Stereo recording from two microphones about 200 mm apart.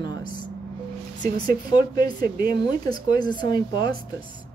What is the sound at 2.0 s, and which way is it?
Speech, 50° right (ahead or behind).